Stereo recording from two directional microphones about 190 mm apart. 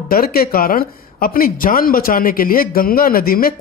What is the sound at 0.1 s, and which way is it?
A man's voice, 50° left (ahead or behind).